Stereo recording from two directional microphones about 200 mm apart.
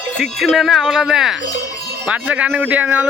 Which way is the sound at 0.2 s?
Centre (ahead or behind).